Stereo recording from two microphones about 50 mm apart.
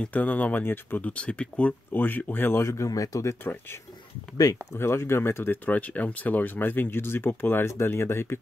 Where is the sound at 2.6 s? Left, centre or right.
Left.